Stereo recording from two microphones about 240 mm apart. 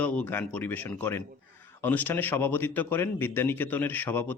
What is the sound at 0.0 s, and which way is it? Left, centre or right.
A man's voice, centre.